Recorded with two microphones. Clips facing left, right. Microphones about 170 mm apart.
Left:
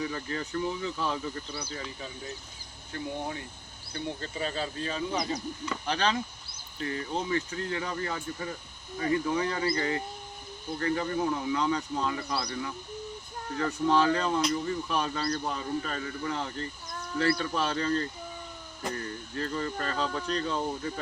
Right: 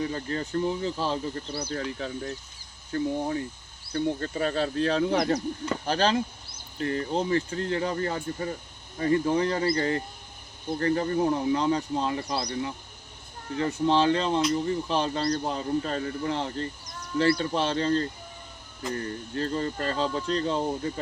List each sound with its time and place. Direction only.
0.0 s speech: 40° right (ahead or behind)
1.7 s speech: 65° right (ahead or behind)
2.9 s speech: 35° right (ahead or behind)
3.9 s speech: 50° right (ahead or behind)
5.8 s speech: 35° right (ahead or behind)